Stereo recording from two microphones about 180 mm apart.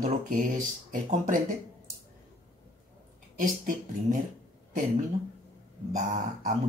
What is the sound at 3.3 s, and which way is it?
Speech, 45° right (ahead or behind).